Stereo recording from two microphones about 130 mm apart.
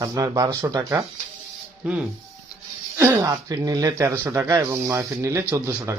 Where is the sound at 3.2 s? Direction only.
30° right (ahead or behind).